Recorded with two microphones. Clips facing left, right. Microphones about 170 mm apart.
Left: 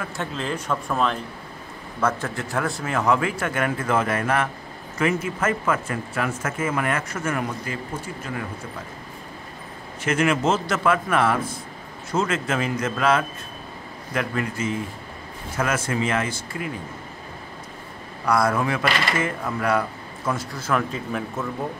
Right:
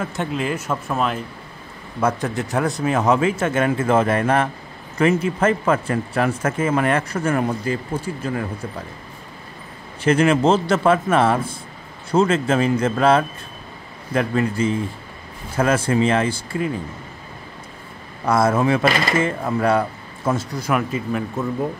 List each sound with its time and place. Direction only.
0.0 s speech: 20° right (ahead or behind); by 1.2 s 5° right (ahead or behind)
2.0 s a man's voice: 15° right (ahead or behind); by 8.1 s 30° right (ahead or behind)
10.0 s a man's voice: 30° right (ahead or behind)
18.2 s a man's voice: 25° right (ahead or behind)
20.6 s speech: 10° right (ahead or behind)